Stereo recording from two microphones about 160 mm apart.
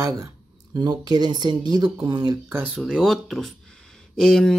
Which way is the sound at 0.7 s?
25° right (ahead or behind).